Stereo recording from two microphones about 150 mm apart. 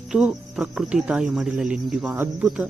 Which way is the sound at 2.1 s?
15° right (ahead or behind).